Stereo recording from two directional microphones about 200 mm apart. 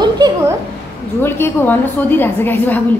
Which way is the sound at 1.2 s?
10° left (ahead or behind).